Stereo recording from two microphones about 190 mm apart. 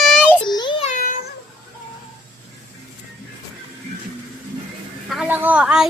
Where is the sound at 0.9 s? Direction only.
45° left (ahead or behind).